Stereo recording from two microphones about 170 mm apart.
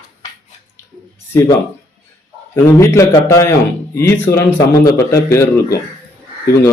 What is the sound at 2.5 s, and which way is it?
Speech, 15° left (ahead or behind).